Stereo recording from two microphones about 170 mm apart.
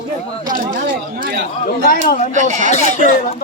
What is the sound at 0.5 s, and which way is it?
Chatter, 50° right (ahead or behind).